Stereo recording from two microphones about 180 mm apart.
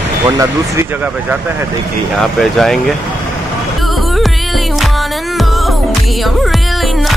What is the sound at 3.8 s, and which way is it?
Music, centre (ahead or behind).